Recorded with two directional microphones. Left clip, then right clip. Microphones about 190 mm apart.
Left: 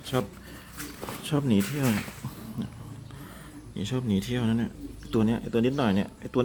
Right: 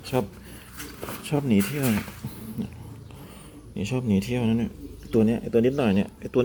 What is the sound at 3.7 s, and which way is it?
Speech, 5° right (ahead or behind).